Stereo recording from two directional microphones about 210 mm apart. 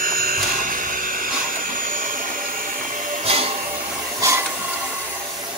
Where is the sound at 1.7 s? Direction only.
40° right (ahead or behind).